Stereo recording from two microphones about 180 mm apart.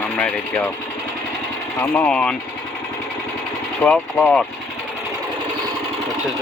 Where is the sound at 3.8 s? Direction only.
5° left (ahead or behind).